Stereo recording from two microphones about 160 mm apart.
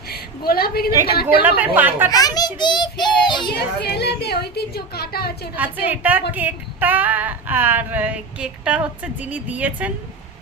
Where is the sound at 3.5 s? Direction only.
90° left.